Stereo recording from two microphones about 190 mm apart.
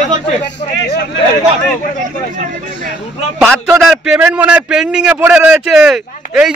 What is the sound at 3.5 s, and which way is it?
A man's voice, centre (ahead or behind).